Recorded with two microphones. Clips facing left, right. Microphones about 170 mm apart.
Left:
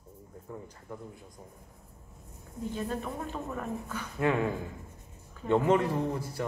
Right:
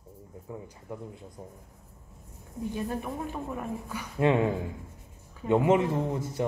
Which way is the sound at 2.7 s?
15° right (ahead or behind).